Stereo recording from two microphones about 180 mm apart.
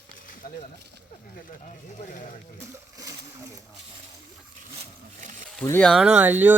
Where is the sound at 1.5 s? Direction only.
45° left (ahead or behind).